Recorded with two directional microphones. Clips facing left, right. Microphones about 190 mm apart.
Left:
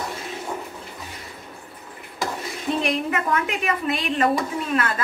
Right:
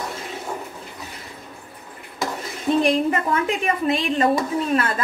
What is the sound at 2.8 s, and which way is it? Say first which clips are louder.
Speech: right 6 dB; 35° right (ahead or behind).